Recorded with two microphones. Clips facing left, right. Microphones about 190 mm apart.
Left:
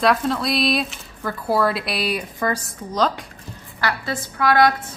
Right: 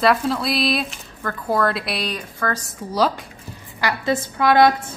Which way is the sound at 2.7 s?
10° right (ahead or behind).